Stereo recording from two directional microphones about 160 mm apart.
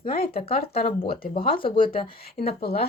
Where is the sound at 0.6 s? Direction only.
70° left (ahead or behind).